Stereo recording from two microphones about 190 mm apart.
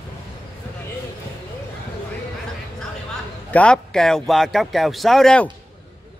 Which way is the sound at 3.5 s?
5° left (ahead or behind).